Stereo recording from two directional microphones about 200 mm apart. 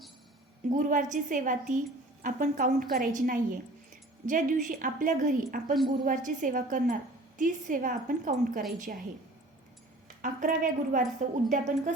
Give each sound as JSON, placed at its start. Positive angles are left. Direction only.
{"t": 0.7, "sound": "a woman's voice", "side_deg": -40}
{"t": 10.2, "sound": "a woman's voice", "side_deg": -40}